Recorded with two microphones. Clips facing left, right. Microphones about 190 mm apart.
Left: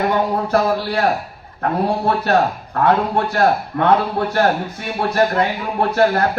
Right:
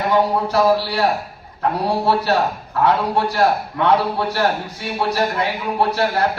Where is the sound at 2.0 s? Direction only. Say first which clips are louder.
Left 1 dB; 55° left (ahead or behind).